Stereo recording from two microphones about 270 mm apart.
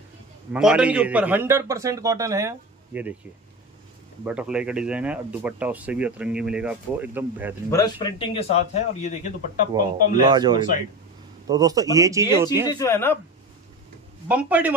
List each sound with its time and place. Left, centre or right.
0.5 s a man's voice: centre
4.2 s speech: centre
7.7 s a man's voice: centre
10.2 s a man's voice: centre
12.6 s a man's voice: centre
14.2 s speech: centre